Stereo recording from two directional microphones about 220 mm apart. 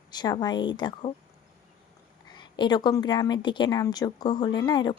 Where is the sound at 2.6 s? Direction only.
20° left (ahead or behind).